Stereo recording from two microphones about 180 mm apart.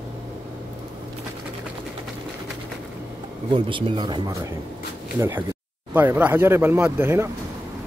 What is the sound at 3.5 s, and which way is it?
Speech, 25° right (ahead or behind).